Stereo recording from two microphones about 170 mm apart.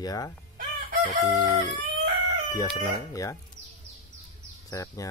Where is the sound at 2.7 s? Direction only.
20° left (ahead or behind).